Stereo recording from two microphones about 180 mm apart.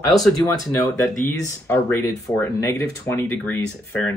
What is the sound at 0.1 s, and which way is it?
Speech, 20° left (ahead or behind).